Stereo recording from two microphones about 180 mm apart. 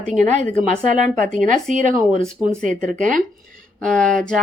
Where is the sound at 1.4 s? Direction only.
45° right (ahead or behind).